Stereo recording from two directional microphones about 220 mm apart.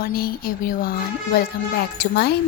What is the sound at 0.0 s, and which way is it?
Speech, 45° left (ahead or behind).